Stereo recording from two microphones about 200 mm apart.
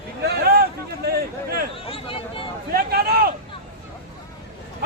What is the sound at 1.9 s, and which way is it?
Speech, 25° left (ahead or behind).